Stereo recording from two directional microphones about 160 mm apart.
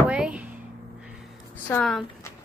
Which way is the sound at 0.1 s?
5° right (ahead or behind).